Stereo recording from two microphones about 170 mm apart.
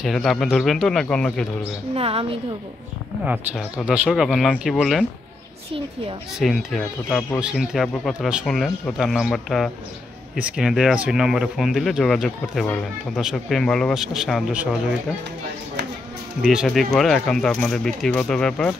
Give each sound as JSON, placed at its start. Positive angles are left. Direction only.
{"t": 0.0, "sound": "speech", "side_deg": 0}
{"t": 2.0, "sound": "a woman's voice", "side_deg": -35}
{"t": 3.3, "sound": "speech", "side_deg": -5}
{"t": 6.4, "sound": "speech", "side_deg": 0}
{"t": 16.4, "sound": "speech", "side_deg": 0}